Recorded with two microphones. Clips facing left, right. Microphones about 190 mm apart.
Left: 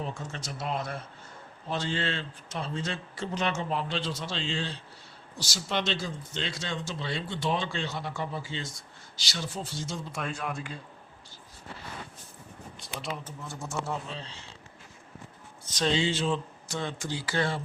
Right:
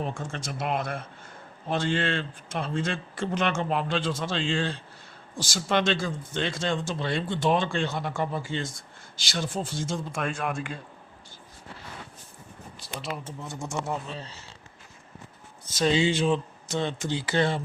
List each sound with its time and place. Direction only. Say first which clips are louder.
0.0 s speech: right 4 dB; 50° right (ahead or behind)
10.2 s speech: right 5 dB; 75° right (ahead or behind)
12.8 s a sound: right 2 dB; centre (ahead or behind)
13.7 s speech: right 2 dB; 15° right (ahead or behind)
15.7 s speech: right 4 dB; 10° right (ahead or behind)